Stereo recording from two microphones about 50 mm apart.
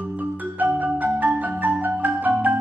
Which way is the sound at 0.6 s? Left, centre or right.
Right.